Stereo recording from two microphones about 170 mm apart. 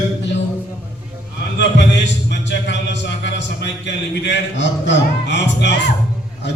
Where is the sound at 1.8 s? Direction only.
90° left.